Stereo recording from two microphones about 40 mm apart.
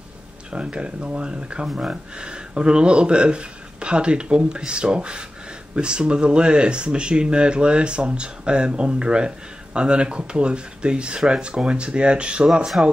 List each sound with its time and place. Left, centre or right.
0.5 s speech: right